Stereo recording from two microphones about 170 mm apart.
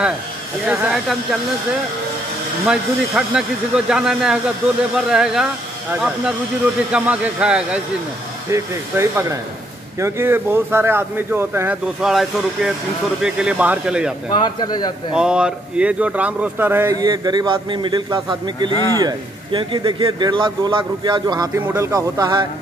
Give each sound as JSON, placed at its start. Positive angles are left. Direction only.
{"t": 0.7, "sound": "speech", "side_deg": 0}
{"t": 2.6, "sound": "speech", "side_deg": -5}
{"t": 8.5, "sound": "speech", "side_deg": -15}
{"t": 14.3, "sound": "a man's voice", "side_deg": 25}
{"t": 15.1, "sound": "speech", "side_deg": -5}